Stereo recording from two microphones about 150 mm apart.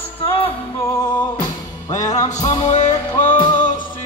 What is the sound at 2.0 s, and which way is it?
Music, 25° left (ahead or behind).